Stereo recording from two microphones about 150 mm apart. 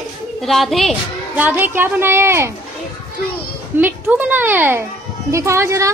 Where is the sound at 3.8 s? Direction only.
10° right (ahead or behind).